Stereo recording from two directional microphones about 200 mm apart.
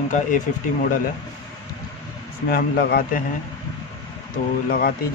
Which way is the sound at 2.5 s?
50° left (ahead or behind).